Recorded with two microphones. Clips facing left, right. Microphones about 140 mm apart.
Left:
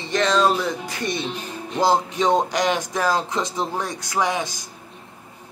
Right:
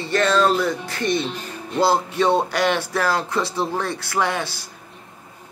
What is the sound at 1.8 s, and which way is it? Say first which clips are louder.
Speech: right 1 dB; 15° left (ahead or behind).